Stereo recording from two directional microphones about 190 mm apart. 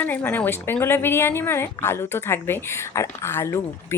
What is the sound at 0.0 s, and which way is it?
Speech, 10° left (ahead or behind).